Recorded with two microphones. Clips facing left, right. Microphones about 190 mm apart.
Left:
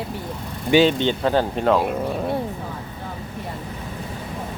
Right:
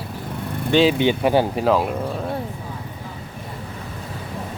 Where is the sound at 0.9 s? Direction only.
10° right (ahead or behind).